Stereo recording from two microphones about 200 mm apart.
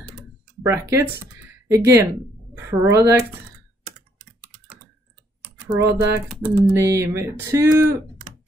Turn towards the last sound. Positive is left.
turn(degrees=-15)  # may be behind; listen again after turning